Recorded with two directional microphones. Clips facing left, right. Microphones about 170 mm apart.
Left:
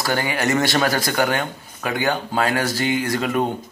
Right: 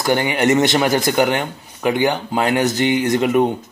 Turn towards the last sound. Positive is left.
turn(degrees=-15)  # may be behind; listen again after turning